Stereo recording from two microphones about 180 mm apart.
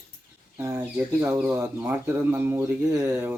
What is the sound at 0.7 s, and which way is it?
Speech, 15° right (ahead or behind).